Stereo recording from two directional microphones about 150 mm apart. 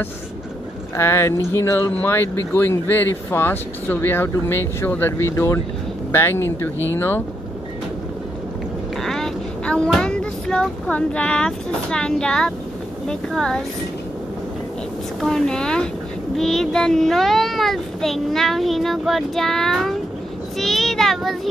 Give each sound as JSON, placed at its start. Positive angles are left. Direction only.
{"t": 0.9, "sound": "speech", "side_deg": 15}
{"t": 8.9, "sound": "a woman's voice", "side_deg": 0}
{"t": 15.1, "sound": "a child's voice", "side_deg": 0}